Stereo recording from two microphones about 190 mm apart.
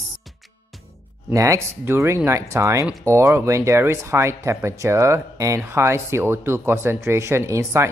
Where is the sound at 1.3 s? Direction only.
15° right (ahead or behind).